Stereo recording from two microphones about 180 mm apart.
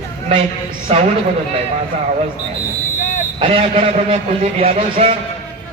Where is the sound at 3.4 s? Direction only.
30° right (ahead or behind).